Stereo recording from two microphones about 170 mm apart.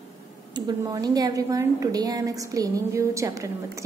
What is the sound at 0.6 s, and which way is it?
A woman's voice, 25° right (ahead or behind).